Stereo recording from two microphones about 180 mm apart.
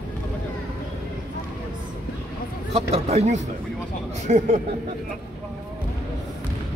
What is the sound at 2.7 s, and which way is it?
Speech, 35° right (ahead or behind).